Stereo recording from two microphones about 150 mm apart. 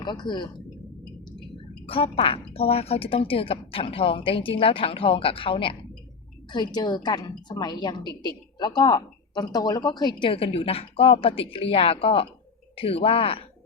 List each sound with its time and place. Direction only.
0.0 s a woman's voice: 30° left (ahead or behind)
1.9 s a woman's voice: 40° left (ahead or behind)